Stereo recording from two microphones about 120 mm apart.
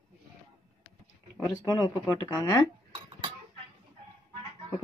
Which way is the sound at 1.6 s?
30° left (ahead or behind).